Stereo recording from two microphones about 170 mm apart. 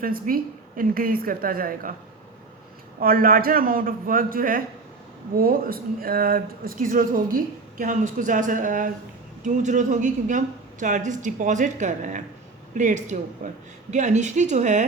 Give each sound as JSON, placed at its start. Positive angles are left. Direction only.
{"t": 0.0, "sound": "speech", "side_deg": -55}
{"t": 3.0, "sound": "speech", "side_deg": -55}